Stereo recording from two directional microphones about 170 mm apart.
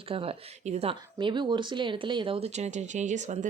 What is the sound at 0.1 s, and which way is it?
Speech, 35° right (ahead or behind).